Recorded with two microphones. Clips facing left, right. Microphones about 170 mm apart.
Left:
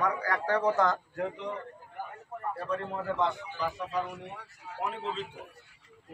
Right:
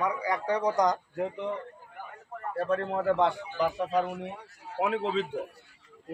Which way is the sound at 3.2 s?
65° right (ahead or behind).